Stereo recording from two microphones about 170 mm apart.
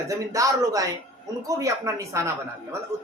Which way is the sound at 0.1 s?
20° right (ahead or behind).